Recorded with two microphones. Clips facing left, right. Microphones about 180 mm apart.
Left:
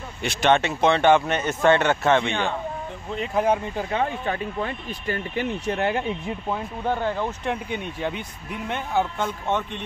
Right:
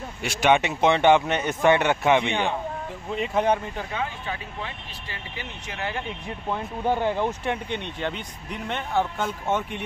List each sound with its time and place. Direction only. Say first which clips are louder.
0.2 s speech: left 1 dB; 10° right (ahead or behind)
3.2 s speech: left 1 dB; centre (ahead or behind)
3.9 s speech: left 7 dB; 50° left (ahead or behind)
6.9 s speech: right 2 dB; 15° right (ahead or behind)
7.4 s speech: left 1 dB; 5° left (ahead or behind)
9.5 s speech: right 1 dB; 10° right (ahead or behind)